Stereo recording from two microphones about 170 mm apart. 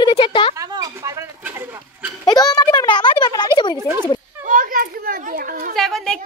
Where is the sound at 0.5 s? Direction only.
20° right (ahead or behind).